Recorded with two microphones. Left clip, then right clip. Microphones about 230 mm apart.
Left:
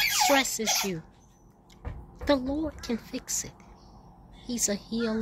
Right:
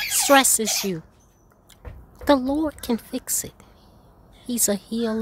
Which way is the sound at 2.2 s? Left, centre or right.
Right.